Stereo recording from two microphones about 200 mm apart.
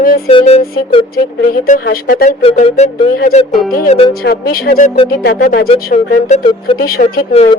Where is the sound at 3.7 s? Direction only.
45° left (ahead or behind).